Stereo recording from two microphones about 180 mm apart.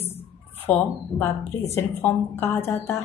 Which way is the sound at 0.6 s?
10° left (ahead or behind).